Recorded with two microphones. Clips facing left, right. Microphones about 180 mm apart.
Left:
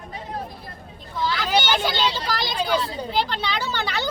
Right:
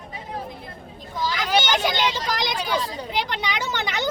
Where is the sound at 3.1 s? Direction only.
15° right (ahead or behind).